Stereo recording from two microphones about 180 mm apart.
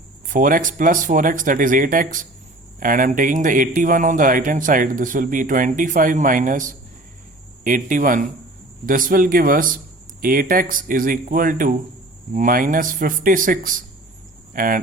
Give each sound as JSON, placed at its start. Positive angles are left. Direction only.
{"t": 0.3, "sound": "speech", "side_deg": -50}